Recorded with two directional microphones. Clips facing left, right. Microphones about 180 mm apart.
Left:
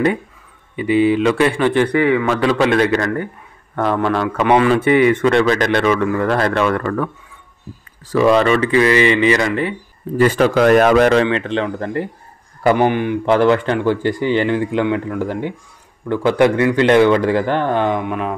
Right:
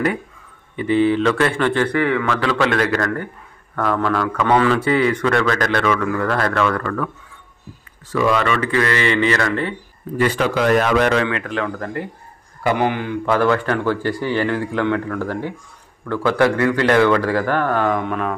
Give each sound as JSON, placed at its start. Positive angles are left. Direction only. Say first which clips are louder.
{"t": 0.7, "sound": "a man's voice", "louder": "left 2 dB", "side_deg": 15}
{"t": 8.1, "sound": "a man's voice", "louder": "left 5 dB", "side_deg": 35}
{"t": 10.1, "sound": "a man's voice", "louder": "left 5 dB", "side_deg": 45}
{"t": 11.2, "sound": "speech", "louder": "left 4 dB", "side_deg": 25}
{"t": 17.9, "sound": "a man's voice", "louder": "left 1 dB", "side_deg": 10}